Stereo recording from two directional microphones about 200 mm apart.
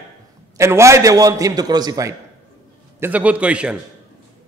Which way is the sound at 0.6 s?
15° right (ahead or behind).